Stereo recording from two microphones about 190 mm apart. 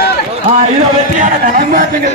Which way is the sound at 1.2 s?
45° right (ahead or behind).